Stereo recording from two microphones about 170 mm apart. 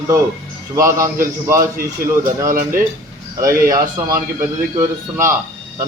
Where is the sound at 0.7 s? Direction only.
15° right (ahead or behind).